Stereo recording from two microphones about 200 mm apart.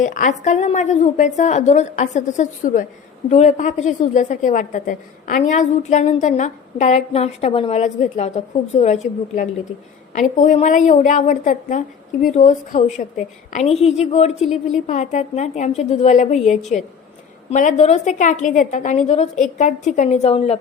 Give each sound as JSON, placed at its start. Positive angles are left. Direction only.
{"t": 0.0, "sound": "a woman's voice", "side_deg": 40}
{"t": 14.4, "sound": "speech", "side_deg": 0}
{"t": 14.8, "sound": "a woman's voice", "side_deg": 35}